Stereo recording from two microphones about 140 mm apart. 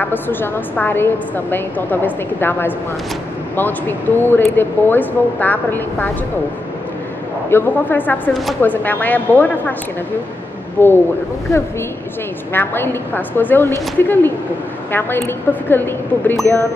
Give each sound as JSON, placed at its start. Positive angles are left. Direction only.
{"t": 0.0, "sound": "a woman's voice", "side_deg": 15}
{"t": 7.4, "sound": "a woman's voice", "side_deg": 15}
{"t": 8.3, "sound": "speech", "side_deg": 0}
{"t": 8.5, "sound": "a woman's voice", "side_deg": 15}
{"t": 10.8, "sound": "a woman's voice", "side_deg": 15}
{"t": 12.5, "sound": "a woman's voice", "side_deg": 15}